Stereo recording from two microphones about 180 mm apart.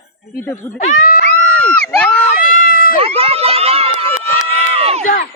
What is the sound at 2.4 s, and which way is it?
Run, 50° left (ahead or behind).